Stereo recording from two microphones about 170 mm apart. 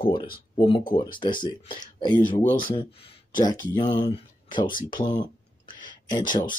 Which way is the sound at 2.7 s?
30° left (ahead or behind).